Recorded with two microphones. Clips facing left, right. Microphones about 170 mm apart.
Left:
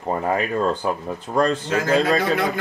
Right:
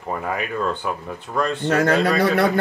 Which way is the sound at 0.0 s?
30° left (ahead or behind).